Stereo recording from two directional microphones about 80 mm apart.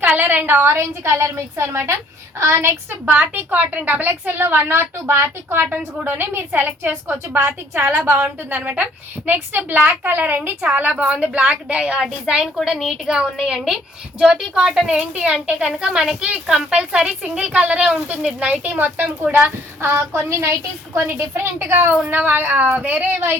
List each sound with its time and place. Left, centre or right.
0.0 s a woman's voice: right
3.1 s a woman's voice: right
8.5 s a woman's voice: centre